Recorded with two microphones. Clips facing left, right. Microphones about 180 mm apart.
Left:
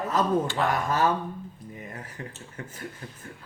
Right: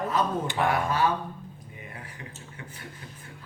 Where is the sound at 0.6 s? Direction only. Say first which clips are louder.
Even; 45° left (ahead or behind).